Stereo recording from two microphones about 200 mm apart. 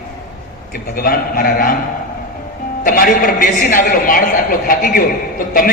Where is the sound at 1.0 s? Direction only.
45° left (ahead or behind).